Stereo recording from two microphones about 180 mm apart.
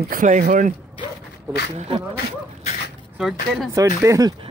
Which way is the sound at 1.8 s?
30° right (ahead or behind).